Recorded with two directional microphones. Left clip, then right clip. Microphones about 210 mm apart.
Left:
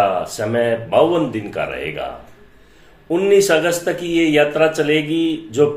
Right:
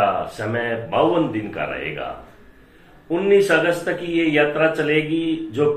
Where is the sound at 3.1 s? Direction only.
50° left (ahead or behind).